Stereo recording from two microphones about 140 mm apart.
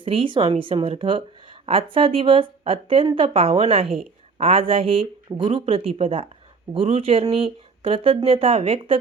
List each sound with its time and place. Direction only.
0.0 s a woman's voice: 40° right (ahead or behind)